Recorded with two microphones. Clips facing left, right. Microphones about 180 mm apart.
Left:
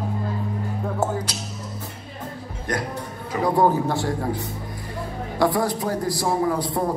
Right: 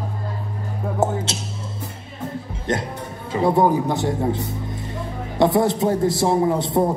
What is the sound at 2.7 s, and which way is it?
Music, 25° right (ahead or behind).